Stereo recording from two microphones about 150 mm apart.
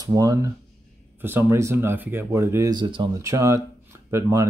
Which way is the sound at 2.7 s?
30° right (ahead or behind).